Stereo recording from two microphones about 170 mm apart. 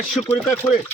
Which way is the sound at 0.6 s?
15° left (ahead or behind).